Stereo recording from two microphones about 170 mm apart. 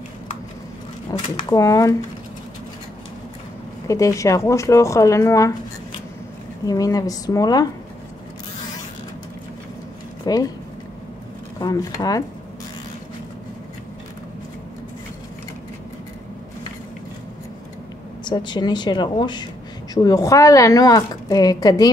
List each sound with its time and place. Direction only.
1.1 s speech: 25° left (ahead or behind)
3.8 s speech: 20° left (ahead or behind)
6.6 s speech: 20° left (ahead or behind)
10.2 s speech: 20° left (ahead or behind)
11.6 s speech: 20° left (ahead or behind)
18.2 s speech: 25° left (ahead or behind)